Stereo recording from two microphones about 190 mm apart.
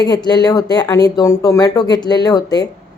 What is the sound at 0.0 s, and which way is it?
Speech, 20° left (ahead or behind).